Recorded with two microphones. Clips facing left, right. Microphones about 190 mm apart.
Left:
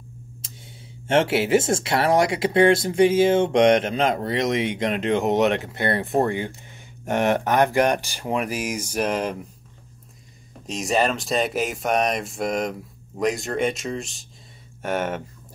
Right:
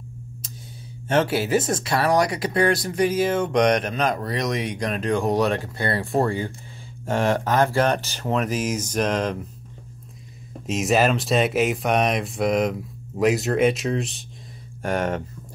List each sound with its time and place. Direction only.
1.0 s speech: 25° left (ahead or behind); by 9.4 s 10° left (ahead or behind)
10.7 s speech: centre (ahead or behind)